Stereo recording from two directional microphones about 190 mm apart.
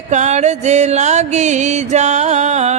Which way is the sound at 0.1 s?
40° right (ahead or behind).